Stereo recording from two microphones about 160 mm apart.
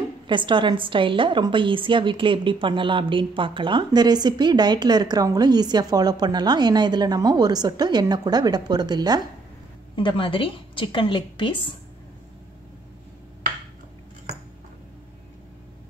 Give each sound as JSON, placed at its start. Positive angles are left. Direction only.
{"t": 0.3, "sound": "a woman's voice", "side_deg": -30}
{"t": 9.9, "sound": "a woman's voice", "side_deg": 30}